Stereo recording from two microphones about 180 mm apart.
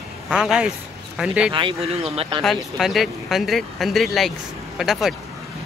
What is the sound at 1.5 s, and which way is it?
Speech, 25° right (ahead or behind).